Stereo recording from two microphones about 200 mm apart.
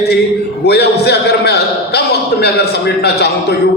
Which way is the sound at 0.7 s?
55° left (ahead or behind).